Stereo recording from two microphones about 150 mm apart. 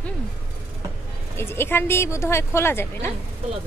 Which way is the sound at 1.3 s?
15° left (ahead or behind).